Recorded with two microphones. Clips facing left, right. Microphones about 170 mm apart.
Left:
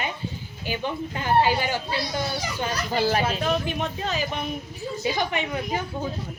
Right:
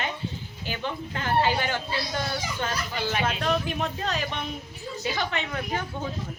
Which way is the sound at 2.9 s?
35° left (ahead or behind).